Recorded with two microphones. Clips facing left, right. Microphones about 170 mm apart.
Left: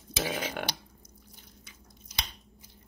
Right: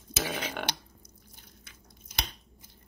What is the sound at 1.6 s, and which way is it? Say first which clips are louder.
Squish: left 1 dB; 55° right (ahead or behind).